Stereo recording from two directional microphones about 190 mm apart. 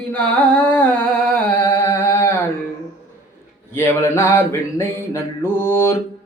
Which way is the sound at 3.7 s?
15° left (ahead or behind).